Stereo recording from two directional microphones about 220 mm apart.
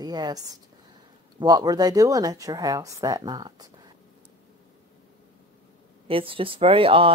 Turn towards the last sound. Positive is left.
turn(degrees=-25)  # may be behind; listen again after turning